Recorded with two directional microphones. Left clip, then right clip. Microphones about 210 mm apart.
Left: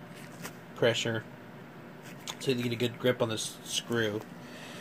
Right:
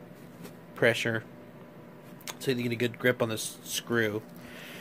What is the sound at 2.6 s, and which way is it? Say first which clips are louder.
Speech: right 2 dB; 35° right (ahead or behind).